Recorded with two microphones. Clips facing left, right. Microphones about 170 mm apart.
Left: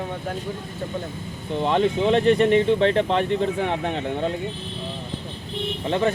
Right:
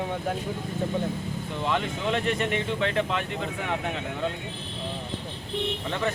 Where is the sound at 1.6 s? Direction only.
35° left (ahead or behind).